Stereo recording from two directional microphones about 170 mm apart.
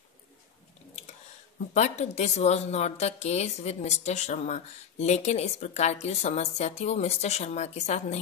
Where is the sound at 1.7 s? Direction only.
40° left (ahead or behind).